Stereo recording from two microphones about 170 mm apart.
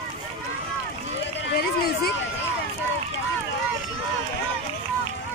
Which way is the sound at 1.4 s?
65° left (ahead or behind).